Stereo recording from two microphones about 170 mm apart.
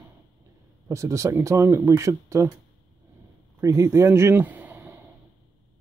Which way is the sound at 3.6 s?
20° right (ahead or behind).